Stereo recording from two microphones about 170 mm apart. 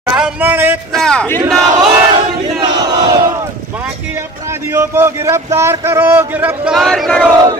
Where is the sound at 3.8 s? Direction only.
10° right (ahead or behind).